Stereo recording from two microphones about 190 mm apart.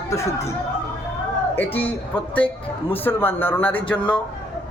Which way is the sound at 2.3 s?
25° left (ahead or behind).